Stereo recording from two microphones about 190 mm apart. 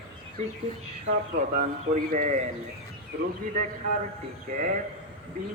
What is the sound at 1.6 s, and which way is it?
Speech, 40° right (ahead or behind).